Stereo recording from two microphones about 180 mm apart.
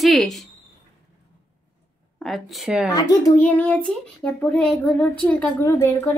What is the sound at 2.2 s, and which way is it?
Speech, centre (ahead or behind).